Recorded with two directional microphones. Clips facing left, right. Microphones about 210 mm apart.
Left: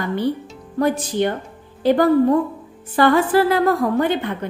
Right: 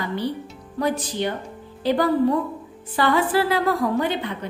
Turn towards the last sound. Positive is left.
turn(degrees=50)  # may be behind; listen again after turning